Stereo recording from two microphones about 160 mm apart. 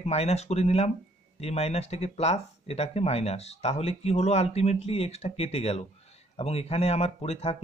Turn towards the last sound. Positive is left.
turn(degrees=40)  # may be behind; listen again after turning